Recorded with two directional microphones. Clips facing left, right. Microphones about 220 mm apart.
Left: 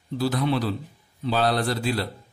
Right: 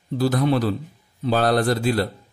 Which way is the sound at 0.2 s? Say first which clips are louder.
Right 4 dB; 45° right (ahead or behind).